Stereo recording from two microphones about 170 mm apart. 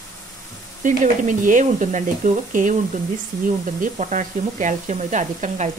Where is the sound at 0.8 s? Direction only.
50° right (ahead or behind).